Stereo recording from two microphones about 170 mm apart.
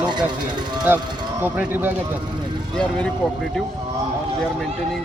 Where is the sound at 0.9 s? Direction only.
15° right (ahead or behind).